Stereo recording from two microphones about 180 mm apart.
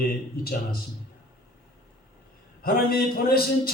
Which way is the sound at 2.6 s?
60° left (ahead or behind).